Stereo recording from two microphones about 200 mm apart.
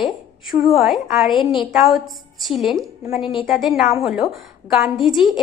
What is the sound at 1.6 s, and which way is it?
A woman's voice, centre (ahead or behind).